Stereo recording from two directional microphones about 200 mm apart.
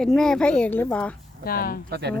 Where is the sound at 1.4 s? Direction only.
45° left (ahead or behind).